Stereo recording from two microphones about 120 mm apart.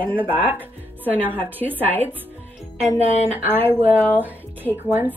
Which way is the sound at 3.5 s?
15° right (ahead or behind).